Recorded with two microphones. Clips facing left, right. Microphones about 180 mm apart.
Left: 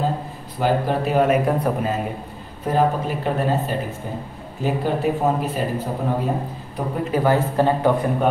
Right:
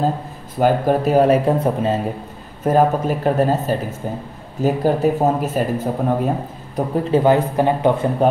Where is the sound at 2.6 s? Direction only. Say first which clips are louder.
Right 4 dB; 45° right (ahead or behind).